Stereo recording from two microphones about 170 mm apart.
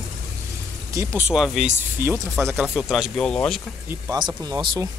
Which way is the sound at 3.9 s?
25° right (ahead or behind).